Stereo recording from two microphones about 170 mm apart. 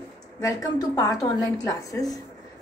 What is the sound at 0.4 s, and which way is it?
A woman's voice, 20° left (ahead or behind).